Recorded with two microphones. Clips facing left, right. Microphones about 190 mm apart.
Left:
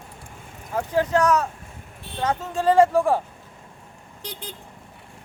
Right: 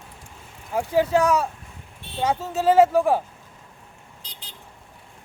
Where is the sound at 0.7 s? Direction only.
10° right (ahead or behind).